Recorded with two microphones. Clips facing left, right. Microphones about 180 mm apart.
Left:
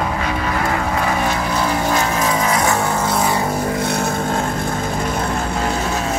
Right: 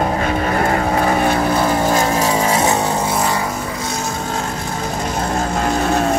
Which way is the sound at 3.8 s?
60° left (ahead or behind).